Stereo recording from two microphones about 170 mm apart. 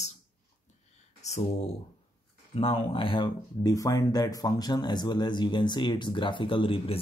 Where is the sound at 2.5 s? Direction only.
35° left (ahead or behind).